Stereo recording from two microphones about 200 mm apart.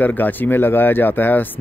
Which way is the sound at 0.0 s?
10° left (ahead or behind).